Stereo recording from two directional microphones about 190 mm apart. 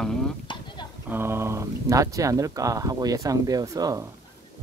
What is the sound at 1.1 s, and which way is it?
Speech, 10° right (ahead or behind).